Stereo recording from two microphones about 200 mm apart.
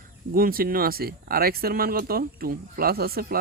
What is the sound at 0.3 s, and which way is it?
Speech, 45° right (ahead or behind).